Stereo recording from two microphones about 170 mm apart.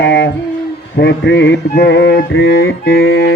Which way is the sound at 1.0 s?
90° left.